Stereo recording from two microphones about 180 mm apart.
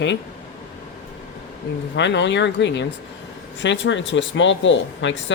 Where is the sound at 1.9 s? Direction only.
85° left.